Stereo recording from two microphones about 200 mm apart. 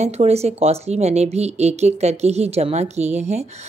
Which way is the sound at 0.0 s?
30° right (ahead or behind).